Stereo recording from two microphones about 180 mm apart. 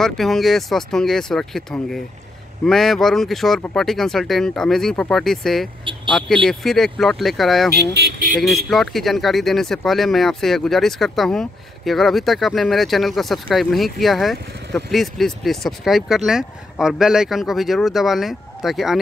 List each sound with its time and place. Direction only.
0.0 s speech: centre (ahead or behind)
7.7 s vehicle: 55° right (ahead or behind)
8.4 s speech: centre (ahead or behind)